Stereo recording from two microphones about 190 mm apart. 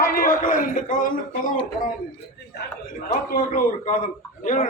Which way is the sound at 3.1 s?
45° left (ahead or behind).